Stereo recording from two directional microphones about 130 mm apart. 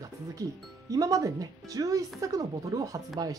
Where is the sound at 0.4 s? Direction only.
25° right (ahead or behind).